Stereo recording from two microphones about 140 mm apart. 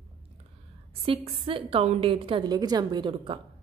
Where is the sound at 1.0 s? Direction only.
40° right (ahead or behind).